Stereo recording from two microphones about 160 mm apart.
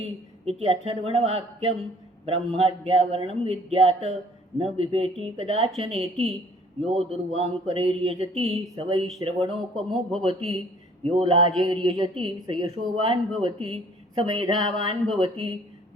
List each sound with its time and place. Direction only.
0.4 s speech: 40° right (ahead or behind)
9.7 s speech: centre (ahead or behind)
10.2 s speech: 40° right (ahead or behind)